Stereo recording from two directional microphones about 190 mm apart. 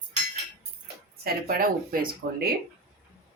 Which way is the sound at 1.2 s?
55° right (ahead or behind).